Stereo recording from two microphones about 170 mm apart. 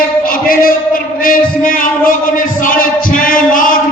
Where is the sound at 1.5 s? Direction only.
55° left (ahead or behind).